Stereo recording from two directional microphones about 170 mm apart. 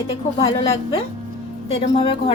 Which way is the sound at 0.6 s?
40° left (ahead or behind).